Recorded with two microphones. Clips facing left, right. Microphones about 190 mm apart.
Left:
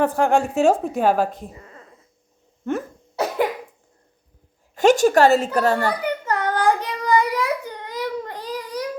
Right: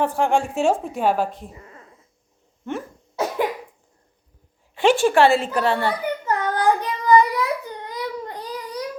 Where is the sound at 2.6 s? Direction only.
40° left (ahead or behind).